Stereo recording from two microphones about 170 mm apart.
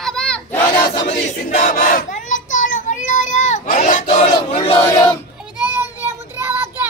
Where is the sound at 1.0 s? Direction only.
40° left (ahead or behind).